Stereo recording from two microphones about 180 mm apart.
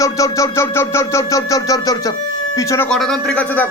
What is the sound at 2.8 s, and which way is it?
Speech, 5° left (ahead or behind).